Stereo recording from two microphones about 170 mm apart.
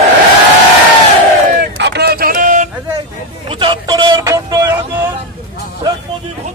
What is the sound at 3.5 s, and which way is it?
Speech, 30° right (ahead or behind).